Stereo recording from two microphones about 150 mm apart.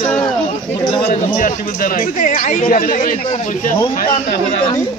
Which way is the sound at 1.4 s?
60° left (ahead or behind).